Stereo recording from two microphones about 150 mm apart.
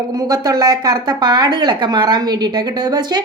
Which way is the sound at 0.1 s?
25° right (ahead or behind).